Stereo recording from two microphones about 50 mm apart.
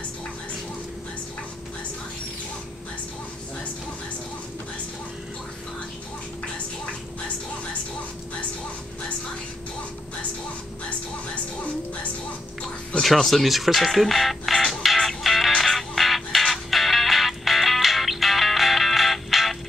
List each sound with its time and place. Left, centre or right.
11.6 s music: left
13.0 s speech: centre
14.7 s music: centre